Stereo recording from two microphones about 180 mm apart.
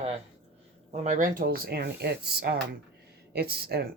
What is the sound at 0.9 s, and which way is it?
Speech, 45° right (ahead or behind).